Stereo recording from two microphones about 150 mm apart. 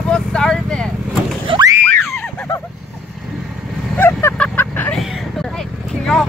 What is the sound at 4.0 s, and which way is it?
Vehicle, 15° left (ahead or behind).